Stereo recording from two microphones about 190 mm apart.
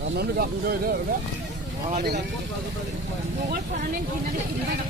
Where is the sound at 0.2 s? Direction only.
55° right (ahead or behind).